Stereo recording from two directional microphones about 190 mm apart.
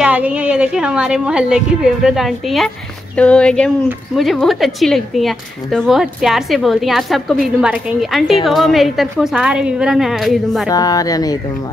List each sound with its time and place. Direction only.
0.0 s a woman's voice: 5° right (ahead or behind)
10.7 s speech: 20° left (ahead or behind)